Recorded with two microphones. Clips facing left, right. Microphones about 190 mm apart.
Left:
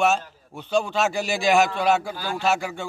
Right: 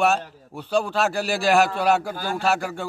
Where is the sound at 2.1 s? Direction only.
50° right (ahead or behind).